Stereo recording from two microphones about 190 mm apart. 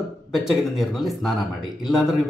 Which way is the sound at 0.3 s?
Centre (ahead or behind).